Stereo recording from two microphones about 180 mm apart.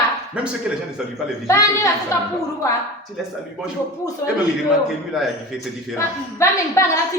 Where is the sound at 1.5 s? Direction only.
15° left (ahead or behind).